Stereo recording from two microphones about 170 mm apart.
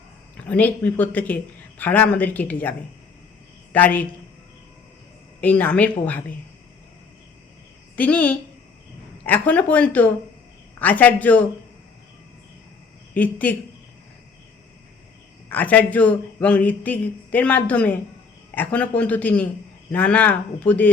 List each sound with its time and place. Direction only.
0.4 s speech: 10° left (ahead or behind)
5.4 s speech: 10° left (ahead or behind)
7.9 s speech: 10° left (ahead or behind)
13.1 s speech: 10° left (ahead or behind)
15.4 s speech: 10° left (ahead or behind)